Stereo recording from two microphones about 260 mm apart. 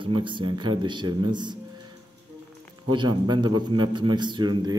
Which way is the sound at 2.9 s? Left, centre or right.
Centre.